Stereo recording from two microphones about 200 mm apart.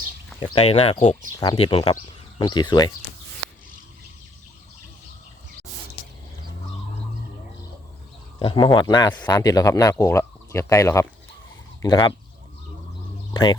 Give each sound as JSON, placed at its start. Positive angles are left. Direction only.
{"t": 0.3, "sound": "speech", "side_deg": 30}
{"t": 8.4, "sound": "speech", "side_deg": 25}
{"t": 13.3, "sound": "speech", "side_deg": 20}